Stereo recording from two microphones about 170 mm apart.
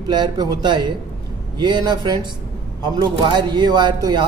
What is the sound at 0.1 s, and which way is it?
A man's voice, 25° right (ahead or behind).